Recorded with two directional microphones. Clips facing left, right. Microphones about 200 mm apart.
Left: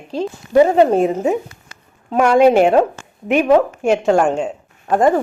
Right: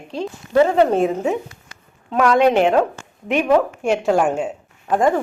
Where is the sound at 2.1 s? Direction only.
30° left (ahead or behind).